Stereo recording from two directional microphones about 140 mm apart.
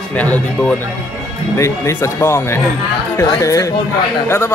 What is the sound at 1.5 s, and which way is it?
Speech, 20° left (ahead or behind).